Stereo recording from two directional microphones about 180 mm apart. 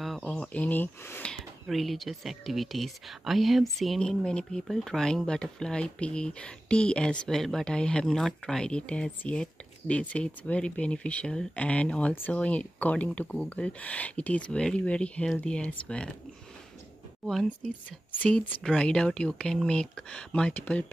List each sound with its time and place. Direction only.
0.0 s speech: centre (ahead or behind)
18.1 s speech: 10° left (ahead or behind)